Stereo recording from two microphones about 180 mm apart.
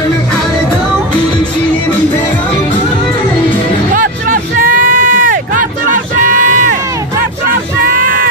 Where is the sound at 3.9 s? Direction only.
50° right (ahead or behind).